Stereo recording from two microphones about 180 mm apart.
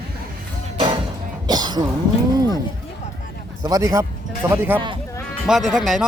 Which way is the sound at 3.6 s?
20° right (ahead or behind).